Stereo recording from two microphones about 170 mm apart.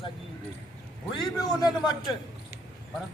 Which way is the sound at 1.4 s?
20° left (ahead or behind).